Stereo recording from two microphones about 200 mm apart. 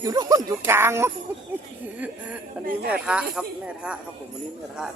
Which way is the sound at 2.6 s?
45° right (ahead or behind).